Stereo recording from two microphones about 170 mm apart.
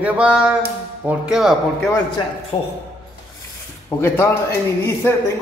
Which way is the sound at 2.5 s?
30° left (ahead or behind).